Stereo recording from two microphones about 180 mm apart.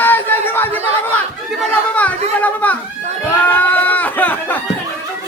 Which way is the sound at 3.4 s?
10° left (ahead or behind).